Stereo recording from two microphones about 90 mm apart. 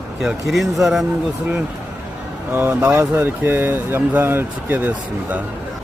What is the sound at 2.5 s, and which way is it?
Speech, 15° right (ahead or behind).